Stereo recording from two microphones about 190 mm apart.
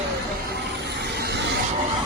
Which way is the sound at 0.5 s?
60° right (ahead or behind).